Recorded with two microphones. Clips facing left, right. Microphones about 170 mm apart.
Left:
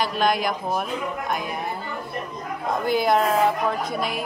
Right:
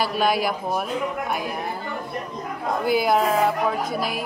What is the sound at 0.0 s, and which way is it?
Speech, 5° right (ahead or behind).